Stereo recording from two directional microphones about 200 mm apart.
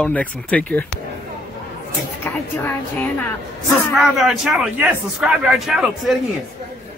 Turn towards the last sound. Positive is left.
turn(degrees=0)  # may be behind; listen again after turning